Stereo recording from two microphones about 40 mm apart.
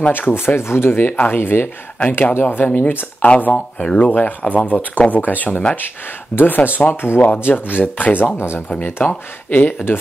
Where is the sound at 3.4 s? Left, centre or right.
Left.